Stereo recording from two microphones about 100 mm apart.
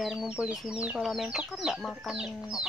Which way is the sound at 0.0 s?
5° right (ahead or behind).